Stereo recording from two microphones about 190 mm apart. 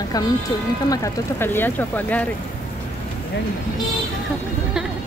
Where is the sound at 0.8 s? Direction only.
15° left (ahead or behind).